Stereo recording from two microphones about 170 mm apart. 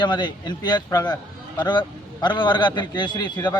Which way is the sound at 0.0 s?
25° left (ahead or behind).